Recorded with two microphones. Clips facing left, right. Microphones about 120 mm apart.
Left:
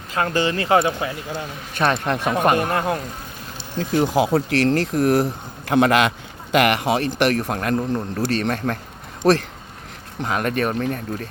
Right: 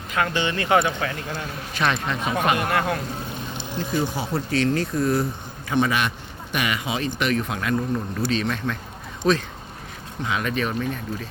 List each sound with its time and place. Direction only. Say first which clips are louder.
0.1 s speech: left 3 dB; 35° left (ahead or behind); by 1.5 s 20° left (ahead or behind)
2.0 s speech: left 5 dB; 60° left (ahead or behind)
2.3 s speech: left 2 dB; 40° left (ahead or behind)
4.0 s speech: left 8 dB; 90° left
5.6 s a man's voice: left 6 dB; 70° left (ahead or behind); by 6.7 s 90° left
6.8 s speech: left 6 dB; 60° left (ahead or behind)
7.4 s a man's voice: left 3 dB; 50° left (ahead or behind)
9.2 s speech: left 4 dB; 60° left (ahead or behind)
10.2 s a man's voice: left 4 dB; 50° left (ahead or behind)